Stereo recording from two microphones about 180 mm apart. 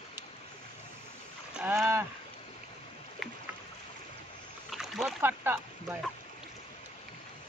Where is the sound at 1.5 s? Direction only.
5° right (ahead or behind).